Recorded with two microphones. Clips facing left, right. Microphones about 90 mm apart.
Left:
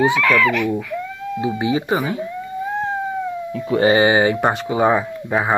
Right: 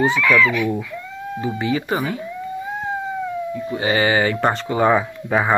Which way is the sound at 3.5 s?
90° left.